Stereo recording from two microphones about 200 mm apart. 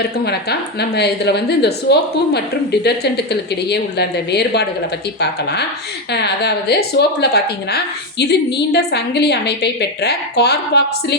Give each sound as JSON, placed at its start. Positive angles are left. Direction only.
{"t": 0.8, "sound": "a woman's voice", "side_deg": 55}